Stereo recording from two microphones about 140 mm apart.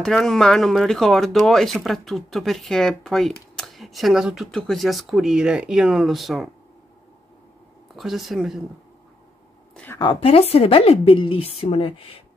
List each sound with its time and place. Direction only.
0.0 s speech: 5° left (ahead or behind)
7.9 s speech: centre (ahead or behind)
9.9 s a woman's voice: 40° left (ahead or behind)